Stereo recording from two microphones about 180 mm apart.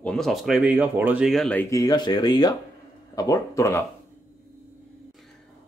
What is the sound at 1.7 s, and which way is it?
A man's voice, 20° left (ahead or behind).